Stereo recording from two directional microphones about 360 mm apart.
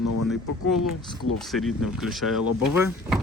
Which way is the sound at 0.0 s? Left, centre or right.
Left.